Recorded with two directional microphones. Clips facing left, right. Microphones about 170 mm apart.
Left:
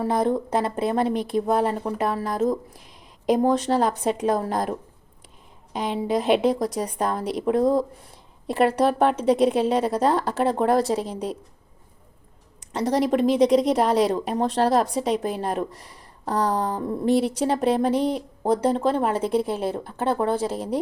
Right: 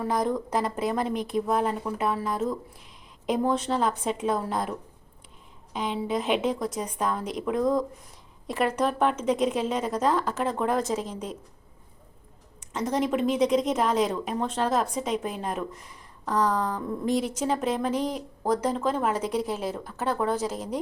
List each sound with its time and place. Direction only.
0.0 s speech: 30° left (ahead or behind)
12.7 s speech: 35° left (ahead or behind)